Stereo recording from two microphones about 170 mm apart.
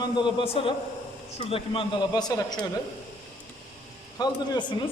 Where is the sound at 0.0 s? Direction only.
30° left (ahead or behind).